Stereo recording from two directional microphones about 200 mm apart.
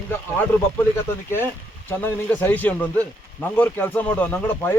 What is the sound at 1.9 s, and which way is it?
Speech, 10° left (ahead or behind).